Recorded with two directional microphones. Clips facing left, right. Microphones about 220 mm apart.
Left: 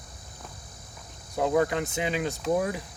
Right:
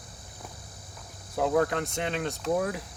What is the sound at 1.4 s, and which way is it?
Speech, centre (ahead or behind).